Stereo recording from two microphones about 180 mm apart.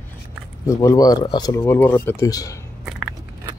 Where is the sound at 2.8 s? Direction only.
5° right (ahead or behind).